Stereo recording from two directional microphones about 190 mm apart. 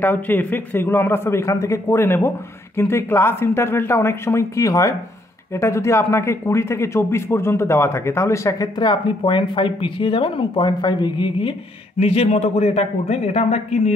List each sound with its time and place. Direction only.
0.0 s a man's voice: 10° left (ahead or behind); by 13.9 s 35° left (ahead or behind)